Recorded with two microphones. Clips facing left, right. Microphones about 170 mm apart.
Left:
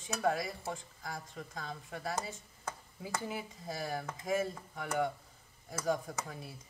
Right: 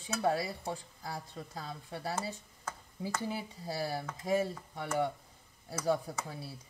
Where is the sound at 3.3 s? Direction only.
35° right (ahead or behind).